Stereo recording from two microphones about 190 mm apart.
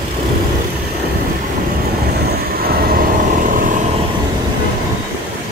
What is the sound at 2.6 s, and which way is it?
Vehicle, 50° right (ahead or behind).